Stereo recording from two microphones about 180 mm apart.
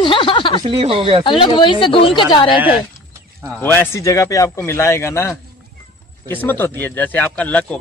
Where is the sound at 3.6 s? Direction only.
10° left (ahead or behind).